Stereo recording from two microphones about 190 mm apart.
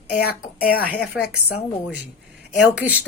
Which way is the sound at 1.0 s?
5° right (ahead or behind).